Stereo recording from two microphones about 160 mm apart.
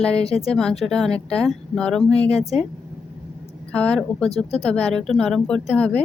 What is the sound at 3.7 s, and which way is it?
A woman's voice, 5° left (ahead or behind).